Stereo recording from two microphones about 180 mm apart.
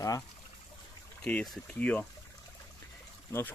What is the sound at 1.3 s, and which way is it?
Speech, 5° left (ahead or behind).